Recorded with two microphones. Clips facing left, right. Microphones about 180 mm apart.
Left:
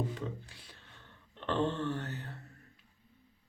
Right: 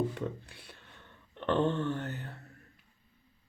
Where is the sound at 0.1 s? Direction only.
60° right (ahead or behind).